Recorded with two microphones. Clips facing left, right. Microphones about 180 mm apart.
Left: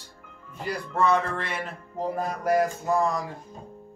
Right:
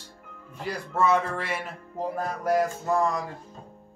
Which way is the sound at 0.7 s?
5° right (ahead or behind).